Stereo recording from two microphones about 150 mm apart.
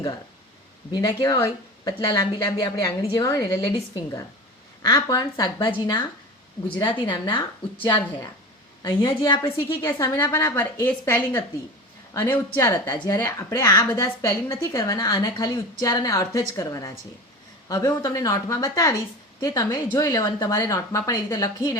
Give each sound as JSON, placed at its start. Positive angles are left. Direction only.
{"t": 0.9, "sound": "a woman's voice", "side_deg": 30}
{"t": 9.8, "sound": "a woman's voice", "side_deg": 20}
{"t": 12.5, "sound": "a woman's voice", "side_deg": 15}